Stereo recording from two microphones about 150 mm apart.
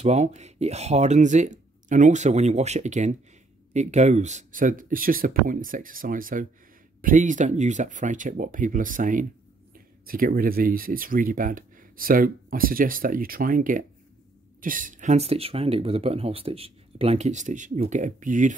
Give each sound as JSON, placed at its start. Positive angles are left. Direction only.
{"t": 0.0, "sound": "speech", "side_deg": -50}